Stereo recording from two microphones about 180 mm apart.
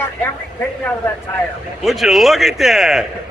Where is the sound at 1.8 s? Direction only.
Centre (ahead or behind).